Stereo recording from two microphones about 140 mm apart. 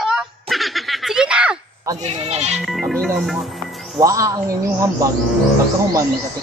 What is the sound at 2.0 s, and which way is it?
Speech, 50° right (ahead or behind).